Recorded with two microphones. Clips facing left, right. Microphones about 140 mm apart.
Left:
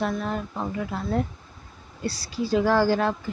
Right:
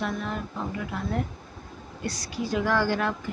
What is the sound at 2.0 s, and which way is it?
Speech, 30° left (ahead or behind).